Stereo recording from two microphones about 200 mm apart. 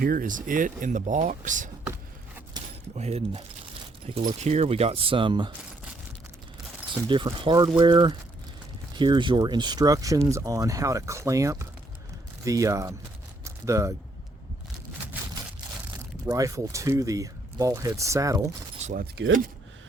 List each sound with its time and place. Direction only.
0.0 s speech: 45° right (ahead or behind)
2.5 s keys jangling: 20° right (ahead or behind)
3.0 s speech: 30° right (ahead or behind)
7.1 s speech: 25° right (ahead or behind)
13.4 s a sound: 15° right (ahead or behind)
16.2 s speech: 15° right (ahead or behind)
18.8 s keys jangling: 35° right (ahead or behind)